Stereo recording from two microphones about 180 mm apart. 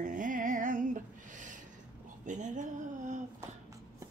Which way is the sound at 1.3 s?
45° right (ahead or behind).